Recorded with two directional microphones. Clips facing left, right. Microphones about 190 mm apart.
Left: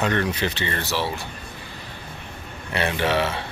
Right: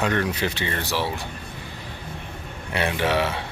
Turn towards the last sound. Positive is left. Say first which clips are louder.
# even
turn(degrees=-10)  # may be behind; listen again after turning